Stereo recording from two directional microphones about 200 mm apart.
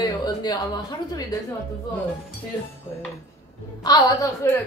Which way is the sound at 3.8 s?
20° left (ahead or behind).